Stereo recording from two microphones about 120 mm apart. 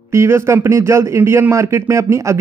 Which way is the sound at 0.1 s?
25° right (ahead or behind).